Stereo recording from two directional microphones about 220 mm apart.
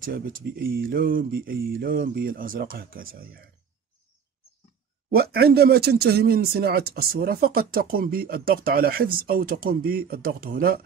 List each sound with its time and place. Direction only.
0.0 s speech: 40° right (ahead or behind)
5.1 s speech: 45° right (ahead or behind)